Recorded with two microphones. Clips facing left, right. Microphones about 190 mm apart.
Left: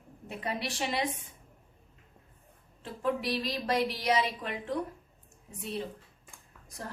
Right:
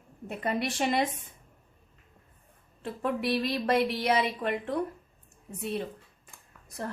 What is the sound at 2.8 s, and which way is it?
A woman's voice, 60° right (ahead or behind).